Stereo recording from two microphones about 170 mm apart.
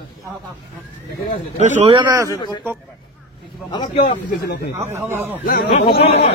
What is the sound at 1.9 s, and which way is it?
Speech, 25° right (ahead or behind).